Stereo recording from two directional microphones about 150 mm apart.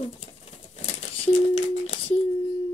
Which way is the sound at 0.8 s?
45° left (ahead or behind).